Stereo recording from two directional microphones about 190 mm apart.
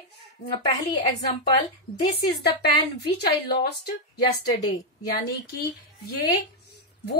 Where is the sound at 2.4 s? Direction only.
60° left (ahead or behind).